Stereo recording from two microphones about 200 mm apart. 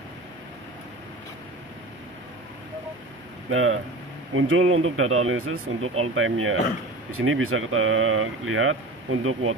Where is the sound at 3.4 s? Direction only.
90° right.